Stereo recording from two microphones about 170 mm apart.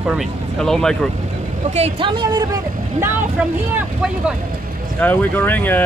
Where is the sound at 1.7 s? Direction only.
35° right (ahead or behind).